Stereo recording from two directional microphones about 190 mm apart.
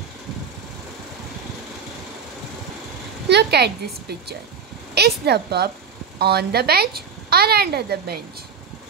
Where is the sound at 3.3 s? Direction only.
60° right (ahead or behind).